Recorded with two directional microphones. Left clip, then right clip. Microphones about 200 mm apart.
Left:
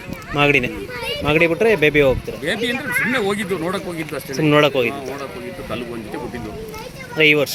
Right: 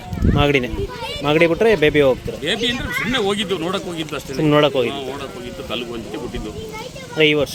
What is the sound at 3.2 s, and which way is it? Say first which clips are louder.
Speech: right 1 dB; 10° left (ahead or behind).